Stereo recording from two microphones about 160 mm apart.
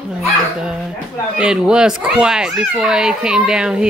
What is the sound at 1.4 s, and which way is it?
A child's voice, 5° right (ahead or behind).